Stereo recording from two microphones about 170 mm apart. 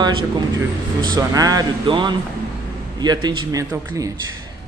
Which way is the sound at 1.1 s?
20° right (ahead or behind).